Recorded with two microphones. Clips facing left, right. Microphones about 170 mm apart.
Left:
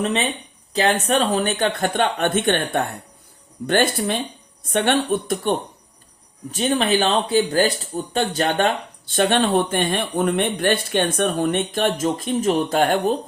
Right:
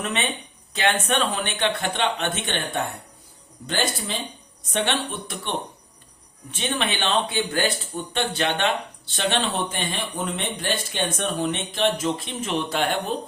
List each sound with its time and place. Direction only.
0.0 s speech: 35° left (ahead or behind)